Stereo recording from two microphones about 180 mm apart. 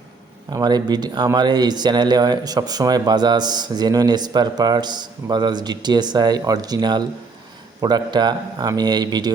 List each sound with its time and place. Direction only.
0.5 s speech: 25° right (ahead or behind)